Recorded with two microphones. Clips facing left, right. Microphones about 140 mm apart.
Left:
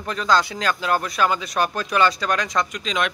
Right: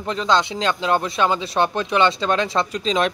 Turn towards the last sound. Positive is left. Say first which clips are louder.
# right 3 dB
turn(degrees=-30)  # may be behind; listen again after turning